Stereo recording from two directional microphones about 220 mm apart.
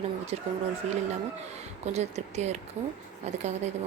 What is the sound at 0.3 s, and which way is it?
Speech, 30° right (ahead or behind).